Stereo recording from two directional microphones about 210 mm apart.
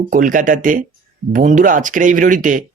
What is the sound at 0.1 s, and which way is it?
Speech, 40° right (ahead or behind).